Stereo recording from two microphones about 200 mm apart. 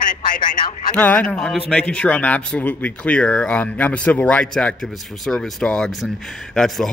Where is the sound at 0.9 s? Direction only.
5° left (ahead or behind).